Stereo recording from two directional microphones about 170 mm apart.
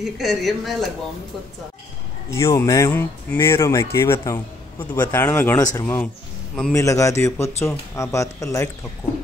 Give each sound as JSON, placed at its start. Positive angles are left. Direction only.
{"t": 0.0, "sound": "speech", "side_deg": 0}
{"t": 2.3, "sound": "speech", "side_deg": 20}